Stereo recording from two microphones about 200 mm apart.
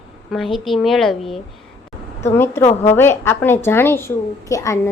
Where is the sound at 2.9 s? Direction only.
10° left (ahead or behind).